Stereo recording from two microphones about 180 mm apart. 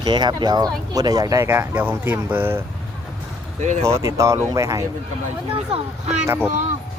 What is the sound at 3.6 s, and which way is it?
Speech, 40° right (ahead or behind).